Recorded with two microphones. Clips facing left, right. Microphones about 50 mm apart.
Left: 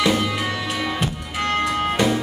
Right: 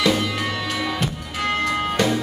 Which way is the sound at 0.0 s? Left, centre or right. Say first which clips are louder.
Left 1 dB; centre.